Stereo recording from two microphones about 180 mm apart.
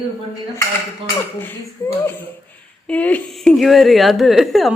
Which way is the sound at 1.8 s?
15° left (ahead or behind).